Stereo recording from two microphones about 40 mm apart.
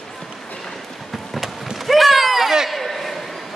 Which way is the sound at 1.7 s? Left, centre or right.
Centre.